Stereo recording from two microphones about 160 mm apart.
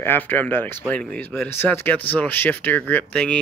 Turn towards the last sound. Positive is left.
turn(degrees=5)  # may be behind; listen again after turning